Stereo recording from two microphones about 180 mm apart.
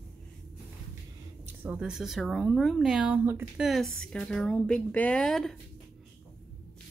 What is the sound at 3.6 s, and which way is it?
A child's voice, centre (ahead or behind).